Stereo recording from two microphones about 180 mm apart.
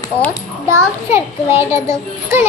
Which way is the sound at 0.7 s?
15° right (ahead or behind).